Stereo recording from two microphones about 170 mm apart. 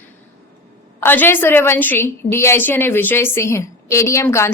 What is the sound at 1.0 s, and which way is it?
A woman's voice, 10° left (ahead or behind).